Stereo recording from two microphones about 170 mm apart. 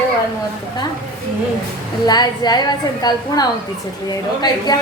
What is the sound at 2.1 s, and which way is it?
A woman's voice, 25° left (ahead or behind).